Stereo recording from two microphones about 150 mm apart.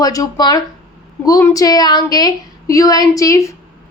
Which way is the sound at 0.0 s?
25° left (ahead or behind).